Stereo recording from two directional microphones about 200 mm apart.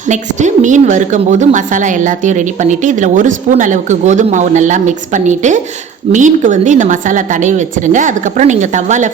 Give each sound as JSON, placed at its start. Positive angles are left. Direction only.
{"t": 0.1, "sound": "a woman's voice", "side_deg": -35}